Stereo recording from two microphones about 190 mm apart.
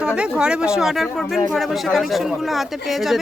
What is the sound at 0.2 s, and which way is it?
Speech, 5° right (ahead or behind).